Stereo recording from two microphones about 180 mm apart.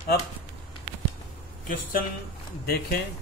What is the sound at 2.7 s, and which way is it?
Speech, 55° left (ahead or behind).